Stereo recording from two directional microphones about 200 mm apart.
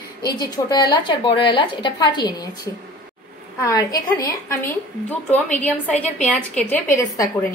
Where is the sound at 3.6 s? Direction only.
15° left (ahead or behind).